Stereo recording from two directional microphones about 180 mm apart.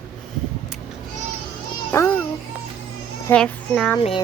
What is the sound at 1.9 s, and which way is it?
Speech, 15° left (ahead or behind).